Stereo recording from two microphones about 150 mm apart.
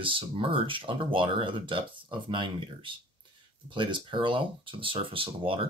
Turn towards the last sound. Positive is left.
turn(degrees=-35)  # may be behind; listen again after turning